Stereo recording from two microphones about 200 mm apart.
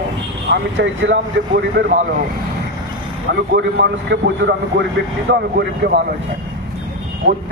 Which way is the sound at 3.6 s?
60° right (ahead or behind).